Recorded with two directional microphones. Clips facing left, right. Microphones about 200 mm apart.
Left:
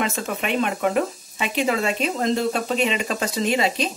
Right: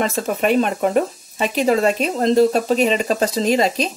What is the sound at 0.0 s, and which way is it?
Speech, 40° right (ahead or behind).